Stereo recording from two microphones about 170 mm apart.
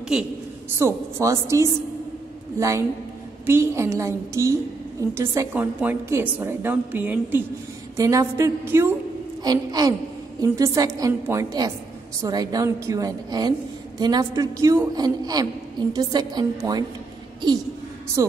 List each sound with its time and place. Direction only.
0.7 s a woman's voice: 15° right (ahead or behind)
3.4 s a woman's voice: 15° right (ahead or behind)